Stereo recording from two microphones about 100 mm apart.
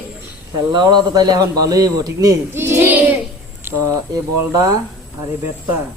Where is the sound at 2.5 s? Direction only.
20° right (ahead or behind).